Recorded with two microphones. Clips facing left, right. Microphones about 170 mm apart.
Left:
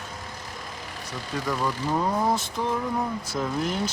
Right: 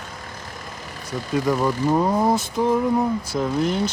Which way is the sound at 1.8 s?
25° right (ahead or behind).